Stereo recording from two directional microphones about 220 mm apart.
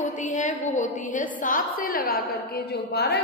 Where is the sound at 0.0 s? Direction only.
35° left (ahead or behind).